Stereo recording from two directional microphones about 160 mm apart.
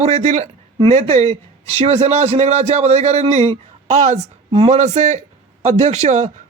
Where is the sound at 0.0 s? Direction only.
40° right (ahead or behind).